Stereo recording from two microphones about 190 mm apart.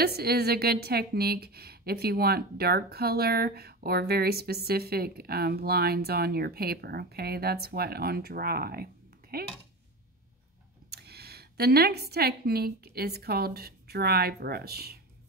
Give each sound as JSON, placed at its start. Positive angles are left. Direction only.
{"t": 0.0, "sound": "a woman's voice", "side_deg": -55}
{"t": 10.9, "sound": "a woman's voice", "side_deg": -55}